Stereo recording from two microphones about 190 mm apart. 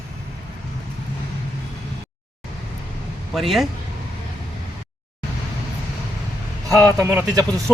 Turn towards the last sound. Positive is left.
turn(degrees=-15)  # may be behind; listen again after turning